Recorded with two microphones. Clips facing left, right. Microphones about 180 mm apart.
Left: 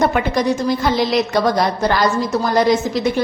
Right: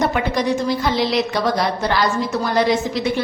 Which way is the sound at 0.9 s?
45° left (ahead or behind).